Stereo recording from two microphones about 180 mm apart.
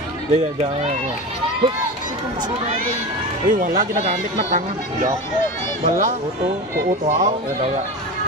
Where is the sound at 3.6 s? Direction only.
45° right (ahead or behind).